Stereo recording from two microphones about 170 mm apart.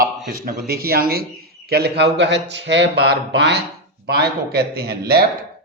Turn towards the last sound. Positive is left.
turn(degrees=-70)  # may be behind; listen again after turning